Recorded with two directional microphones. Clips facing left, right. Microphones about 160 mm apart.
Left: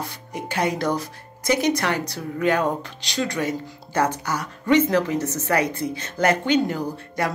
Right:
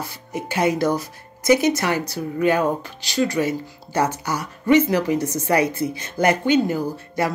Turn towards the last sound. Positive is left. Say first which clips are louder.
# right 2 dB
turn(degrees=-5)  # may be behind; listen again after turning